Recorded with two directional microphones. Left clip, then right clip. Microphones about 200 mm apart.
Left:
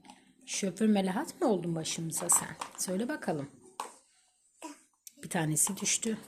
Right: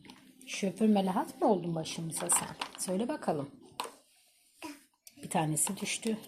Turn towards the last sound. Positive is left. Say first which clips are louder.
# left 2 dB
turn(degrees=25)  # may be behind; listen again after turning